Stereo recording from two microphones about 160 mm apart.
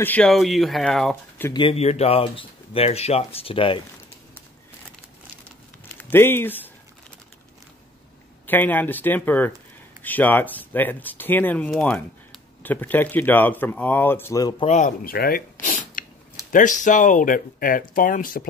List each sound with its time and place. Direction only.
0.0 s speech: 10° left (ahead or behind)
1.5 s speech: 35° left (ahead or behind)
5.9 s speech: 15° left (ahead or behind)
8.5 s speech: 10° left (ahead or behind)
14.6 s speech: 50° left (ahead or behind); by 15.4 s 70° left (ahead or behind)
15.6 s a sound: 60° left (ahead or behind)
16.5 s speech: 55° left (ahead or behind)